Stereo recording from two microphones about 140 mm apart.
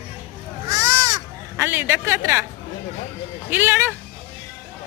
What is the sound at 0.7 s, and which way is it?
Crow, 20° right (ahead or behind).